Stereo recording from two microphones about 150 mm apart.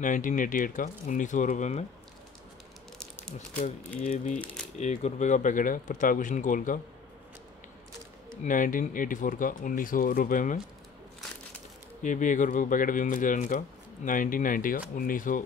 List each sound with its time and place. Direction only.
0.0 s speech: 60° left (ahead or behind)
4.0 s speech: 55° left (ahead or behind)
8.5 s speech: 60° left (ahead or behind)
12.0 s speech: 55° left (ahead or behind)